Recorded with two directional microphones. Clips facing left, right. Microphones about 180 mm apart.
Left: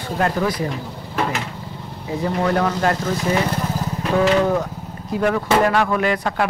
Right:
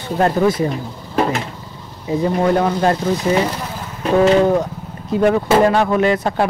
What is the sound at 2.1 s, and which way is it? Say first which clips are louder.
Speech: right 4 dB; 25° right (ahead or behind).